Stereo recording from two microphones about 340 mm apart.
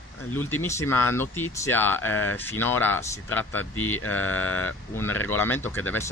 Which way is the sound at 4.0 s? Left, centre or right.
Left.